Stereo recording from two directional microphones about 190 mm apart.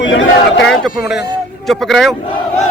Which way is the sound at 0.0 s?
85° left.